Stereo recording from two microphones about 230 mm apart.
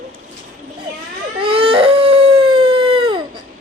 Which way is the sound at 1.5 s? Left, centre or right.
Right.